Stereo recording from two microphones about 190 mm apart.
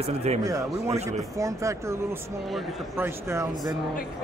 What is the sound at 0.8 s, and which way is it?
Speech, 35° right (ahead or behind).